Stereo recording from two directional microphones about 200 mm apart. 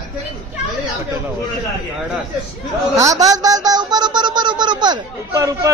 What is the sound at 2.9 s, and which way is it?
Speech, 15° right (ahead or behind).